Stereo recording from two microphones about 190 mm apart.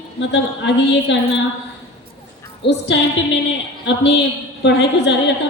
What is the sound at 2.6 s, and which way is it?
Music, 65° left (ahead or behind).